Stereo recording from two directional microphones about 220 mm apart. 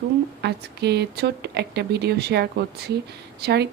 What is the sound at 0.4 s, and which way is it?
Speech, 50° right (ahead or behind).